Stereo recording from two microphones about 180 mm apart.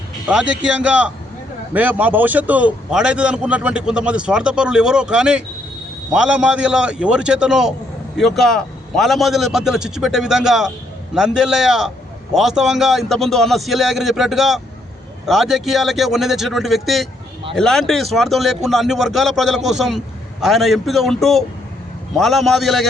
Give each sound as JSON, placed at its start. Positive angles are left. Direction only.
{"t": 0.3, "sound": "a man's voice", "side_deg": -5}